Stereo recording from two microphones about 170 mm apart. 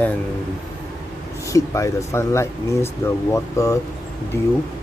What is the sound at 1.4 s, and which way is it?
Speech, 20° left (ahead or behind).